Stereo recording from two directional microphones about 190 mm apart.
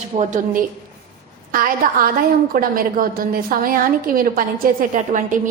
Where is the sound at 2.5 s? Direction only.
50° right (ahead or behind).